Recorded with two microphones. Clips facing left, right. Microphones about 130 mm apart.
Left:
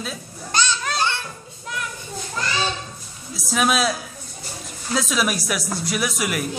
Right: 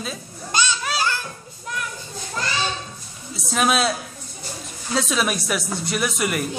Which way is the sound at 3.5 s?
Centre (ahead or behind).